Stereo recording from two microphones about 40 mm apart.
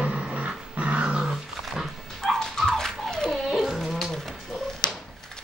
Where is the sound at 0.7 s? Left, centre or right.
Right.